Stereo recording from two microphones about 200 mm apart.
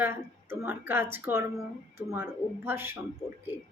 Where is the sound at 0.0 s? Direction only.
10° right (ahead or behind).